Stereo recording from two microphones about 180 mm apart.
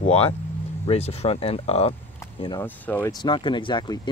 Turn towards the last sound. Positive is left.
turn(degrees=25)  # may be behind; listen again after turning